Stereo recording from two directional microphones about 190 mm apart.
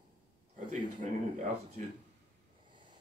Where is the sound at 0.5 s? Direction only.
40° right (ahead or behind).